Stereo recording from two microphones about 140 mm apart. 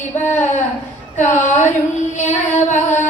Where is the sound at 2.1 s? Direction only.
60° left (ahead or behind).